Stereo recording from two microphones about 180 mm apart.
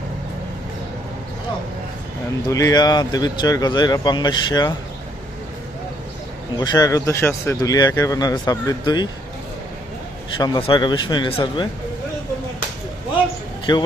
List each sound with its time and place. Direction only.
2.5 s speech: 20° left (ahead or behind)
6.6 s speech: 20° left (ahead or behind)
10.3 s speech: 25° left (ahead or behind)
13.7 s speech: 25° left (ahead or behind)